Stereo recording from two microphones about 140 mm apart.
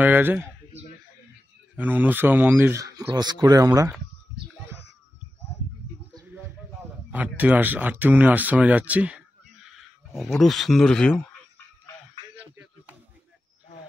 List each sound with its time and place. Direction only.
0.0 s speech: 10° right (ahead or behind)
1.8 s speech: 10° right (ahead or behind)
7.1 s speech: 10° right (ahead or behind)
10.1 s speech: centre (ahead or behind)
12.4 s a sound: 10° right (ahead or behind)